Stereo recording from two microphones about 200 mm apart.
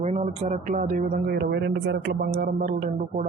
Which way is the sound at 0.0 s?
35° right (ahead or behind).